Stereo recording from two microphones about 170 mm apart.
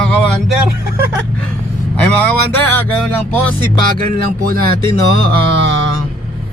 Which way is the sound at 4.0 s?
55° right (ahead or behind).